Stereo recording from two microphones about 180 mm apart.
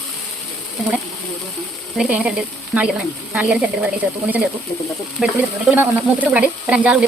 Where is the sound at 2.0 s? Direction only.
5° right (ahead or behind).